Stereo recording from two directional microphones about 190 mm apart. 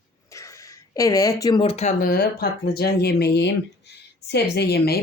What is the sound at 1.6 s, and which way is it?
Speech, 35° left (ahead or behind).